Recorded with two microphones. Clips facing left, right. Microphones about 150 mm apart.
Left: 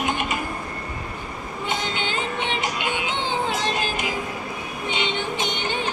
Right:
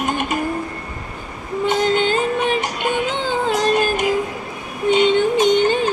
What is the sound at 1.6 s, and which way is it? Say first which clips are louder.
Music: right 11 dB; 45° right (ahead or behind).